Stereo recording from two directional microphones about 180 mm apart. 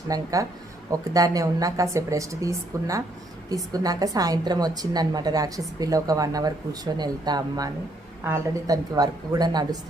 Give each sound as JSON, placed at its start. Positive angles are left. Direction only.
{"t": 0.1, "sound": "a woman's voice", "side_deg": -20}